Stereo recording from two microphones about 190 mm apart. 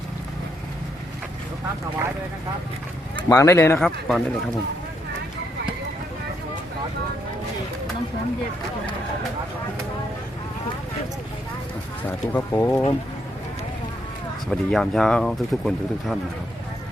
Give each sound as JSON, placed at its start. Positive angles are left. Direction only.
{"t": 3.2, "sound": "speech", "side_deg": 15}
{"t": 3.8, "sound": "speech", "side_deg": 0}
{"t": 12.0, "sound": "speech", "side_deg": 10}
{"t": 14.5, "sound": "speech", "side_deg": 5}